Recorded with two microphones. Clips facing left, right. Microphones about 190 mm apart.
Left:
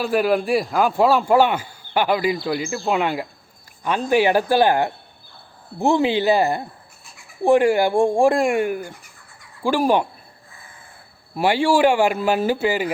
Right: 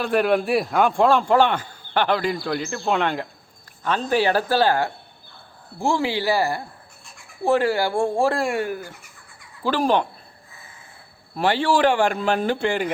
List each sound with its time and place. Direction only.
0.0 s a man's voice: centre (ahead or behind)
11.3 s speech: 10° left (ahead or behind)